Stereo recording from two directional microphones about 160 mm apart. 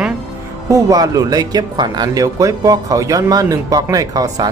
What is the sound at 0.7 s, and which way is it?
Speech, 20° right (ahead or behind).